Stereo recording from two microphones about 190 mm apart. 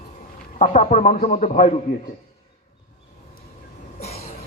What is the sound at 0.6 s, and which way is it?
Speech, 40° left (ahead or behind).